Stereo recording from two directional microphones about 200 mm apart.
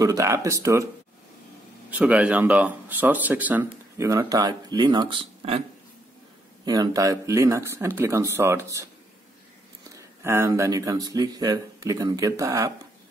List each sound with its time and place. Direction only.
0.0 s speech: 15° right (ahead or behind)
1.9 s speech: 5° right (ahead or behind); by 5.6 s 30° right (ahead or behind)
6.6 s speech: 20° right (ahead or behind)
10.2 s speech: 10° right (ahead or behind)